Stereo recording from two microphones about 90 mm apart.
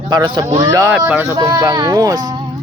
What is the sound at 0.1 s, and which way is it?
Speech, 50° right (ahead or behind).